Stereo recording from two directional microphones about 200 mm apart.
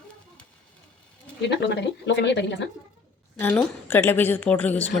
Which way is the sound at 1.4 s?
55° left (ahead or behind).